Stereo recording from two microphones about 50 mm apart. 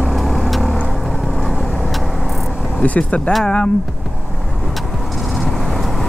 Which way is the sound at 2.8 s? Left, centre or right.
Left.